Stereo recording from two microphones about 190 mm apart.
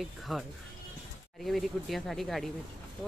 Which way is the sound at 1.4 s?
Centre (ahead or behind).